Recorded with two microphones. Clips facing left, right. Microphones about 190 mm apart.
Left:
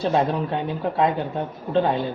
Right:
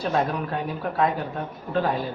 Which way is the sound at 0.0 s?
25° left (ahead or behind).